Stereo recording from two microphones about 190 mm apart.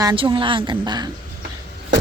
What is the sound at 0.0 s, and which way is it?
A woman's voice, 20° right (ahead or behind).